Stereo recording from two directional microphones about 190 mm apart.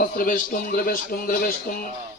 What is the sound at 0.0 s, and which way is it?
A man's voice, 45° left (ahead or behind).